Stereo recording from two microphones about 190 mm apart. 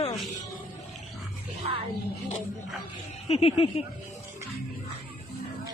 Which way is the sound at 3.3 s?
30° left (ahead or behind).